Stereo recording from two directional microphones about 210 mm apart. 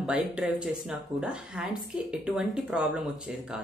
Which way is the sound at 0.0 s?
5° right (ahead or behind).